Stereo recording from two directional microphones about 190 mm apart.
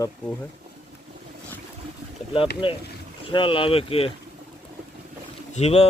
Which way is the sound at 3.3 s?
25° left (ahead or behind).